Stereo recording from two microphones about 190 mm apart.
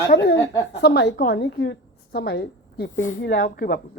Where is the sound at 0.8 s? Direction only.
60° left (ahead or behind).